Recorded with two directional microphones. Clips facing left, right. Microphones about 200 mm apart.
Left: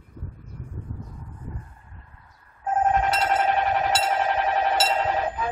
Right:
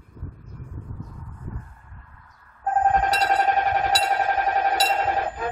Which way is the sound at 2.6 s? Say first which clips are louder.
Right 1 dB; 40° right (ahead or behind).